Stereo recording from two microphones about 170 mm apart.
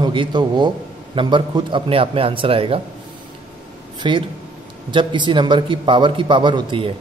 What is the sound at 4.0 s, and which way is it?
A man's voice, 30° right (ahead or behind).